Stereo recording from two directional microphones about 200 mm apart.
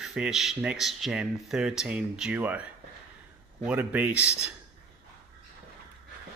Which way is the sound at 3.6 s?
10° right (ahead or behind).